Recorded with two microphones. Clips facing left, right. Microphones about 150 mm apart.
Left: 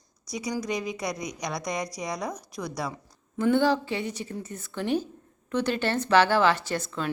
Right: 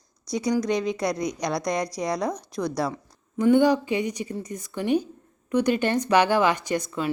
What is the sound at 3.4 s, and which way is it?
Speech, 15° right (ahead or behind).